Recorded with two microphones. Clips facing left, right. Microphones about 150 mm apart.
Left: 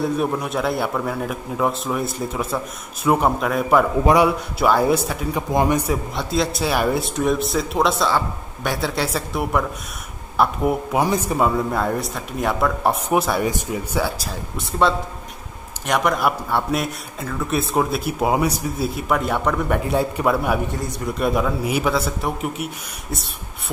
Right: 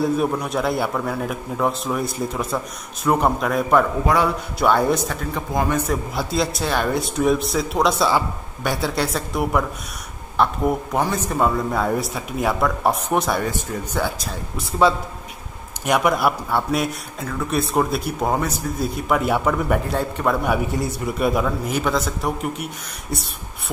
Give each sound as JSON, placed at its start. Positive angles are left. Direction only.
{"t": 0.0, "sound": "speech", "side_deg": 0}
{"t": 4.0, "sound": "a man's voice", "side_deg": 20}
{"t": 4.6, "sound": "speech", "side_deg": 5}
{"t": 6.1, "sound": "speech", "side_deg": 0}
{"t": 19.9, "sound": "speech", "side_deg": 10}